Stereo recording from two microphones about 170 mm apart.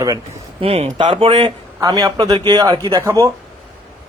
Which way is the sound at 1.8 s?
20° right (ahead or behind).